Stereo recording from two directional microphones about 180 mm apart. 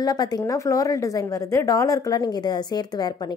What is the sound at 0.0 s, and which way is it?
A woman's voice, 20° left (ahead or behind).